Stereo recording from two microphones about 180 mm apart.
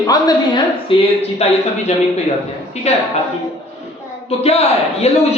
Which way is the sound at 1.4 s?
35° left (ahead or behind).